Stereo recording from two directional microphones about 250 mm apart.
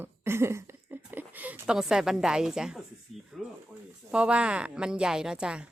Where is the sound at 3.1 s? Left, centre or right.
Left.